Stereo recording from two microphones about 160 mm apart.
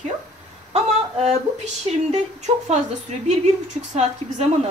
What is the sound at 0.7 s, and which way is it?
Speech, 40° right (ahead or behind).